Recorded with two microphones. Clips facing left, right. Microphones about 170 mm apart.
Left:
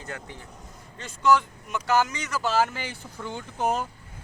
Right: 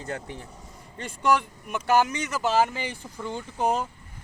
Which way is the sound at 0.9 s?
55° right (ahead or behind).